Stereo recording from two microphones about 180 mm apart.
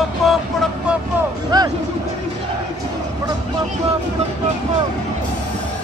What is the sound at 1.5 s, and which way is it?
Music, 25° right (ahead or behind).